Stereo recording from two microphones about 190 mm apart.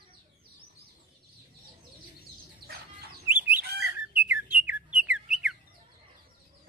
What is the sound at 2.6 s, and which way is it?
Chicken, 55° right (ahead or behind).